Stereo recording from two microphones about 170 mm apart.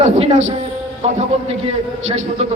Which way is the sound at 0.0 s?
40° right (ahead or behind).